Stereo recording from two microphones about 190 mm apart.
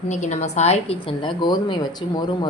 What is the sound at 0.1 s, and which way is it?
A woman's voice, 40° left (ahead or behind).